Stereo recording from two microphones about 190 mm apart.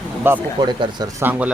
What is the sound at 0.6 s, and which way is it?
Speech, 20° right (ahead or behind).